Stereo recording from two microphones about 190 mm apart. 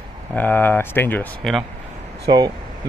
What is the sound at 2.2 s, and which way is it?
Speech, 20° right (ahead or behind).